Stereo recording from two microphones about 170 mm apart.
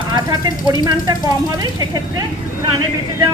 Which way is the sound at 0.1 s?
25° right (ahead or behind).